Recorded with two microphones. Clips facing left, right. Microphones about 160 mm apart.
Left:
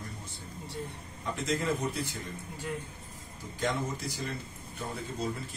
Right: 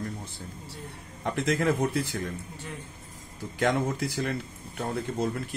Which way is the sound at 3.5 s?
65° right (ahead or behind).